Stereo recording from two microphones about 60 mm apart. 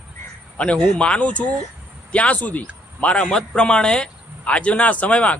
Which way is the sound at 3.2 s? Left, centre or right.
Centre.